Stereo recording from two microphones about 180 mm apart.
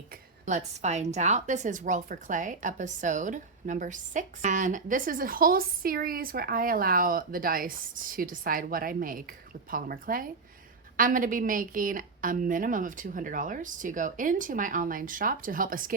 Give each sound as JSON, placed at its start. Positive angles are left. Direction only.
{"t": 0.4, "sound": "a woman's voice", "side_deg": -40}